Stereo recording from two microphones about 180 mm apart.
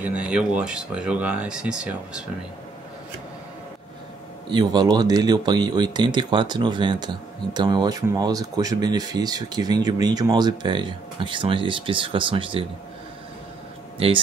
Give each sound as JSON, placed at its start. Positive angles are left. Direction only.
{"t": 0.0, "sound": "speech", "side_deg": -5}
{"t": 4.5, "sound": "speech", "side_deg": -25}
{"t": 13.9, "sound": "speech", "side_deg": -30}